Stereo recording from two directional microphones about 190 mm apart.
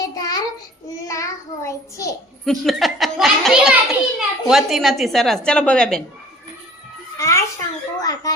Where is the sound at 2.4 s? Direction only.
Centre (ahead or behind).